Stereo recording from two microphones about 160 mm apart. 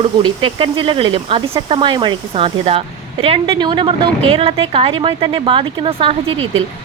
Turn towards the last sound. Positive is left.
turn(degrees=-35)  # may be behind; listen again after turning